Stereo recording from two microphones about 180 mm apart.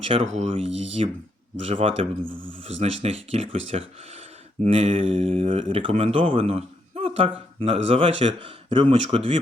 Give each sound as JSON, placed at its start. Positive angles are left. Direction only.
{"t": 0.0, "sound": "speech", "side_deg": -30}